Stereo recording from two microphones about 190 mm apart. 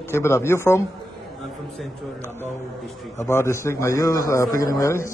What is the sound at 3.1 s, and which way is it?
A man's voice, 15° left (ahead or behind).